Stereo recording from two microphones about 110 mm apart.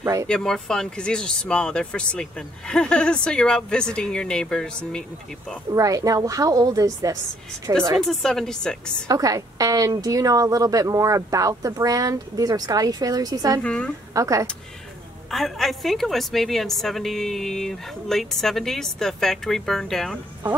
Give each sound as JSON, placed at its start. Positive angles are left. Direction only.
{"t": 0.0, "sound": "speech", "side_deg": -30}
{"t": 0.3, "sound": "speech", "side_deg": 5}
{"t": 5.7, "sound": "a woman's voice", "side_deg": -30}
{"t": 8.1, "sound": "a woman's voice", "side_deg": 0}
{"t": 9.0, "sound": "a woman's voice", "side_deg": -35}
{"t": 13.6, "sound": "speech", "side_deg": 10}
{"t": 14.1, "sound": "speech", "side_deg": -30}
{"t": 15.3, "sound": "a woman's voice", "side_deg": 0}